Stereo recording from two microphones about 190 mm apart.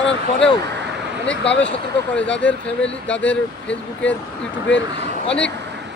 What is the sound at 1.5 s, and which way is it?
Speech, 70° left (ahead or behind).